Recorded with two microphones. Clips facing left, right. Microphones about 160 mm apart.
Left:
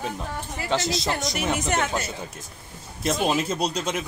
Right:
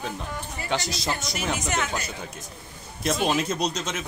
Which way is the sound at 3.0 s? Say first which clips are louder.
Left 1 dB; centre (ahead or behind).